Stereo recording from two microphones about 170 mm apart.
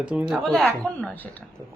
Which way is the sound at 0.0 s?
5° right (ahead or behind).